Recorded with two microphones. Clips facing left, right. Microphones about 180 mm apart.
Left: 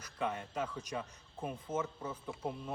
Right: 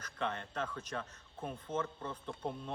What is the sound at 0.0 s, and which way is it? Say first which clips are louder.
A man's voice: left 1 dB; 10° left (ahead or behind).